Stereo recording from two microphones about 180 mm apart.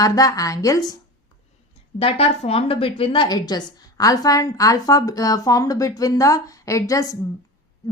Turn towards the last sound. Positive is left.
turn(degrees=20)  # may be behind; listen again after turning